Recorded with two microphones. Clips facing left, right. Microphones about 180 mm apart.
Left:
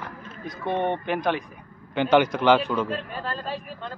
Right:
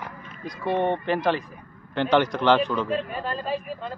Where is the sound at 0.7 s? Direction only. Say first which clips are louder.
Right 2 dB; 15° left (ahead or behind).